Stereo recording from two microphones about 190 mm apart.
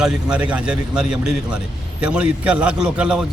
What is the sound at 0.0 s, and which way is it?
A man's voice, 5° right (ahead or behind).